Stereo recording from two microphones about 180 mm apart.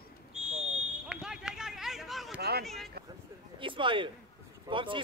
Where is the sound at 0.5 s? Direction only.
40° right (ahead or behind).